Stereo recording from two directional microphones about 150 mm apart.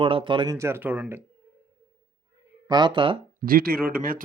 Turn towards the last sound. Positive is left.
turn(degrees=-75)  # may be behind; listen again after turning